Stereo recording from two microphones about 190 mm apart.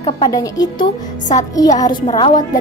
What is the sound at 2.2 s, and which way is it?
Speech, 20° left (ahead or behind).